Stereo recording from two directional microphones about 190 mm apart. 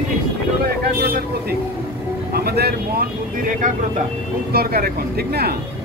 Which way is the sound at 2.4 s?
55° right (ahead or behind).